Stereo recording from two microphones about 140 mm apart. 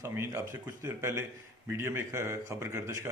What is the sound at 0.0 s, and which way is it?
A man's voice, 20° right (ahead or behind).